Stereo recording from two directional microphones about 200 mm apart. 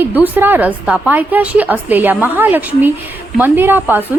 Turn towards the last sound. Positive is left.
turn(degrees=-10)  # may be behind; listen again after turning